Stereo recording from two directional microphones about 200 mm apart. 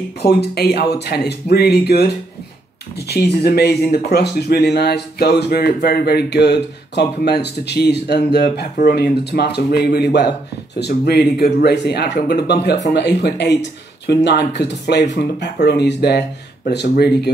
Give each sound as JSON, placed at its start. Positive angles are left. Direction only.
{"t": 0.2, "sound": "speech", "side_deg": 50}